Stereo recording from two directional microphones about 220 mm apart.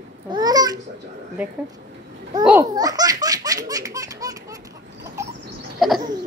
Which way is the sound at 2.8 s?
15° right (ahead or behind).